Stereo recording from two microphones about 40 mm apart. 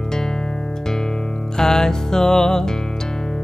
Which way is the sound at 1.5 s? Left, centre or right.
Centre.